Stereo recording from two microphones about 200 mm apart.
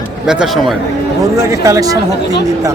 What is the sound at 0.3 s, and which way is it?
Speech, centre (ahead or behind).